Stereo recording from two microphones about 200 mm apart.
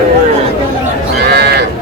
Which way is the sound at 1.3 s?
55° right (ahead or behind).